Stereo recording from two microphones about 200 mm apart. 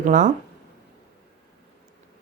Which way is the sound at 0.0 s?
40° right (ahead or behind).